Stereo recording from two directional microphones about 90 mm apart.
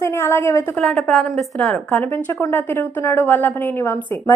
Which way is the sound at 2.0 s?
25° left (ahead or behind).